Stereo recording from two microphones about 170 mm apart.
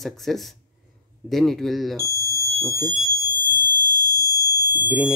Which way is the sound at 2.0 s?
20° right (ahead or behind).